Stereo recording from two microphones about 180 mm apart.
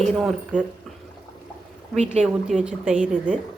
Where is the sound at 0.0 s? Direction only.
Centre (ahead or behind).